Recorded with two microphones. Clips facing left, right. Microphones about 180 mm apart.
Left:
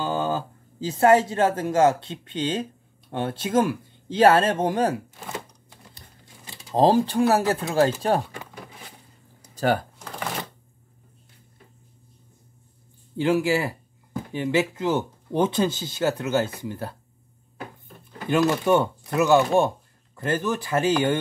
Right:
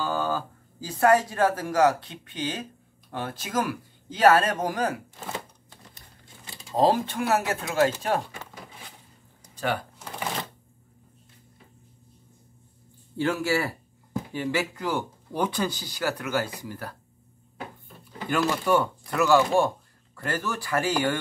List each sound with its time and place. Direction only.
0.0 s speech: 20° left (ahead or behind)
6.4 s speech: 25° left (ahead or behind)
9.9 s shuffling cards: 5° right (ahead or behind)
13.2 s speech: 20° left (ahead or behind)
18.3 s speech: 20° left (ahead or behind)